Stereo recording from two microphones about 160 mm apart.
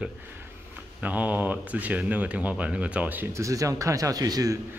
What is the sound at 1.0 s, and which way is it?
Speech, 10° right (ahead or behind).